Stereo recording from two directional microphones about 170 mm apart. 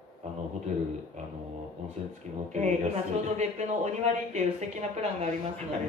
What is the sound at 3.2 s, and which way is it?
Speech, 40° right (ahead or behind).